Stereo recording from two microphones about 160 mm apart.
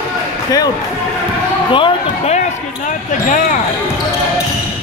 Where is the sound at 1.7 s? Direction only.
35° left (ahead or behind).